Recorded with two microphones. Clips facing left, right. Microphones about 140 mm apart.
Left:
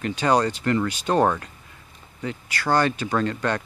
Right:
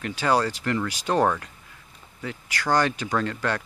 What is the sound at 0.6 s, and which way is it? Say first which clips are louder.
Speech: left 3 dB; 5° left (ahead or behind).